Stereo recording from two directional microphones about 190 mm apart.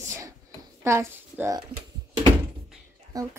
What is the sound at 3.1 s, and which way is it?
Speech, 20° right (ahead or behind).